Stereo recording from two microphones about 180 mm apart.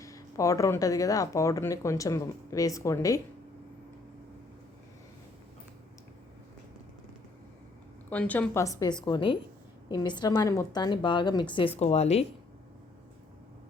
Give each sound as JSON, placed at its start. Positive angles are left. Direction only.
{"t": 0.0, "sound": "speech", "side_deg": 20}
{"t": 8.1, "sound": "a woman's voice", "side_deg": 10}
{"t": 11.8, "sound": "speech", "side_deg": 35}